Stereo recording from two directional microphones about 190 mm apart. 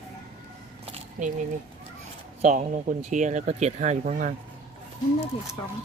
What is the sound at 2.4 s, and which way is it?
Speech, 40° right (ahead or behind).